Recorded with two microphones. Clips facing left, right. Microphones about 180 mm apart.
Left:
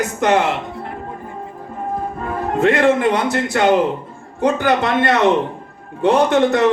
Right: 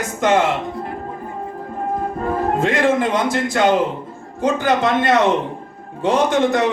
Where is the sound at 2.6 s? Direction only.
65° left (ahead or behind).